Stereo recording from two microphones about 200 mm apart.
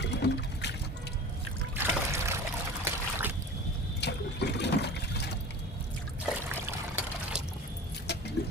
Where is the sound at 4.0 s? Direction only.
55° left (ahead or behind).